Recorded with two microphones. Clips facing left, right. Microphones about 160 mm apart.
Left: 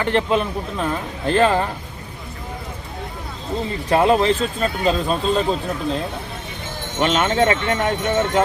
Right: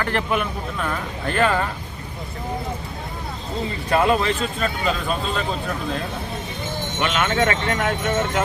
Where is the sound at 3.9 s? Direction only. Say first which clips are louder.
Left 3 dB; 30° left (ahead or behind).